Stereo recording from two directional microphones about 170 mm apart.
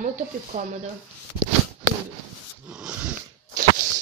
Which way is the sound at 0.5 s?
50° right (ahead or behind).